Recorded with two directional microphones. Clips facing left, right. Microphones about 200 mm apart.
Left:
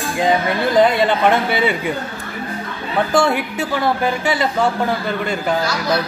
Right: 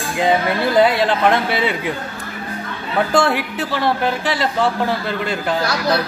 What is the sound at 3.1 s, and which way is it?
Speech, 5° right (ahead or behind).